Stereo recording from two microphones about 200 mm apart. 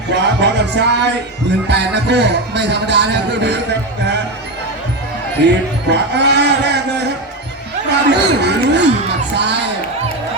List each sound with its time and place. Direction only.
0.1 s music: 60° right (ahead or behind)
5.5 s speech: 60° right (ahead or behind)
7.9 s music: 60° right (ahead or behind)